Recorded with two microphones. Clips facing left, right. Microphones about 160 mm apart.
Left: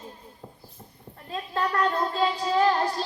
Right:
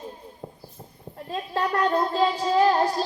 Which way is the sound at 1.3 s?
40° right (ahead or behind).